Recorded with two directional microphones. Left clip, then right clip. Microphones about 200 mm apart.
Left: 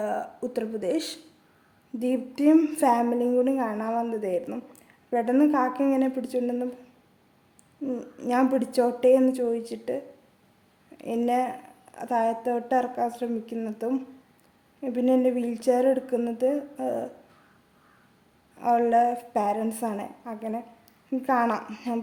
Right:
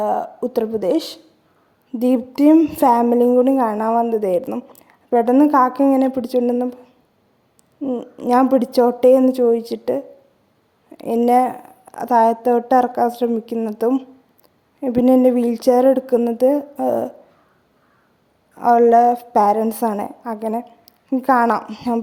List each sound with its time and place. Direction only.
0.0 s a sound: 25° right (ahead or behind)
0.5 s a woman's voice: 35° right (ahead or behind)
7.8 s a woman's voice: 25° right (ahead or behind)
18.5 s a woman's voice: 35° right (ahead or behind)